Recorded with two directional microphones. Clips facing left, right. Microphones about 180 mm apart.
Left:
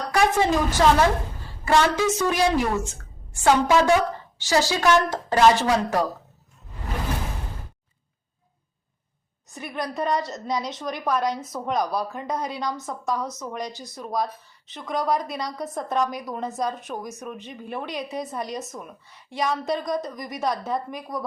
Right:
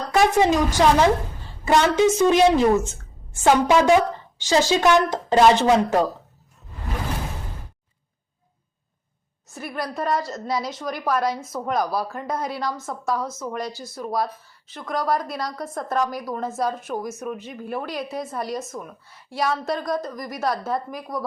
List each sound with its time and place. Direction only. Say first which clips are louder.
0.1 s a woman's voice: right 3 dB; 20° right (ahead or behind)
9.5 s speech: right 1 dB; 5° right (ahead or behind)